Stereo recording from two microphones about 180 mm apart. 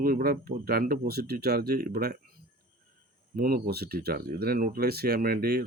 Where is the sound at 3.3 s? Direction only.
55° right (ahead or behind).